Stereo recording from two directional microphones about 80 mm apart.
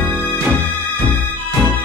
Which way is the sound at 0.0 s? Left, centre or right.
Centre.